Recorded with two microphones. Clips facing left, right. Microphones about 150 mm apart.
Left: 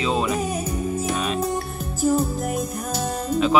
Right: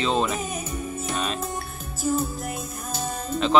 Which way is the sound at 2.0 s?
50° left (ahead or behind).